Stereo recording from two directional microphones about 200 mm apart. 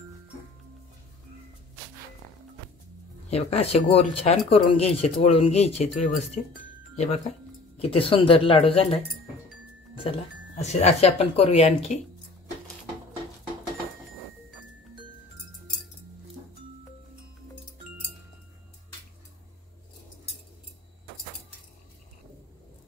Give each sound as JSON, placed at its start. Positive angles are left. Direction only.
{"t": 3.3, "sound": "speech", "side_deg": 30}
{"t": 10.1, "sound": "speech", "side_deg": 25}